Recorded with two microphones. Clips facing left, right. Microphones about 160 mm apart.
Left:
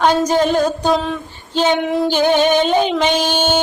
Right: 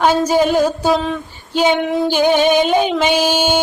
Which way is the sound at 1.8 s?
Centre (ahead or behind).